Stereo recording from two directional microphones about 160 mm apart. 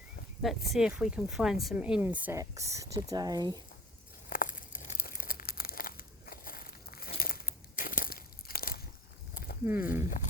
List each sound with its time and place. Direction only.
0.4 s speech: centre (ahead or behind); by 3.6 s 25° right (ahead or behind)
4.3 s crumpling: 60° left (ahead or behind)
9.3 s a sound: 70° left (ahead or behind)
9.6 s speech: 15° right (ahead or behind)